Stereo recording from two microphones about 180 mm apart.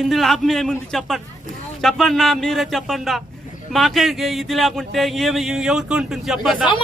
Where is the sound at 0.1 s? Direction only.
Centre (ahead or behind).